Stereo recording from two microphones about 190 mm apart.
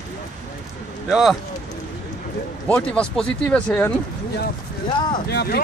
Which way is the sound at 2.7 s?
5° left (ahead or behind).